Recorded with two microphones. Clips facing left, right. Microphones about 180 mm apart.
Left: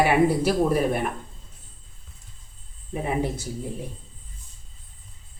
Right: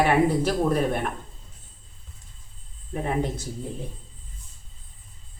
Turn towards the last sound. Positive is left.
turn(degrees=5)  # may be behind; listen again after turning